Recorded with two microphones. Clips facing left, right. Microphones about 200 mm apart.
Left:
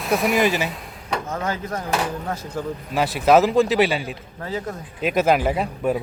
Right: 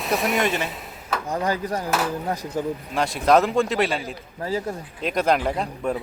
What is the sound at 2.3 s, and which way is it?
Speech, 15° right (ahead or behind).